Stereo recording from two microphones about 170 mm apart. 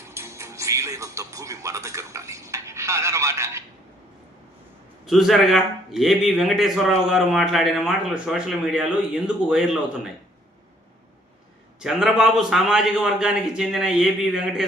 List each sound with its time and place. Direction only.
0.0 s music: 15° right (ahead or behind)
5.0 s speech: centre (ahead or behind)
11.8 s speech: 5° right (ahead or behind)